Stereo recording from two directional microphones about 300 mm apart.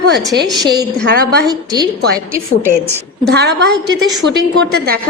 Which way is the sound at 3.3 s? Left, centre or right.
Right.